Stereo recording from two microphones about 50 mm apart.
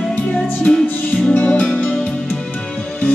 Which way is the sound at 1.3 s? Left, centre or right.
Left.